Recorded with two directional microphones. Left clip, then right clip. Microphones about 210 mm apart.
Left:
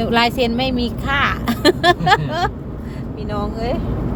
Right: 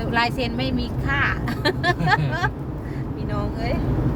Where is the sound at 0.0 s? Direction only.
40° left (ahead or behind).